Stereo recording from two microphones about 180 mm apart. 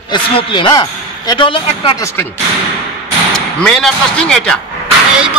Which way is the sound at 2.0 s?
15° left (ahead or behind).